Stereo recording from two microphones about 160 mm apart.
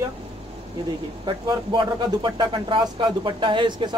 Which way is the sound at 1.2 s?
30° right (ahead or behind).